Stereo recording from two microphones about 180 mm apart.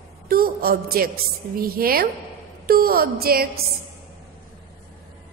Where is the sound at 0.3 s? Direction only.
55° right (ahead or behind).